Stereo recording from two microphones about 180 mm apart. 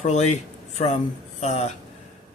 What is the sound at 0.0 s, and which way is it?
Speech, 40° left (ahead or behind).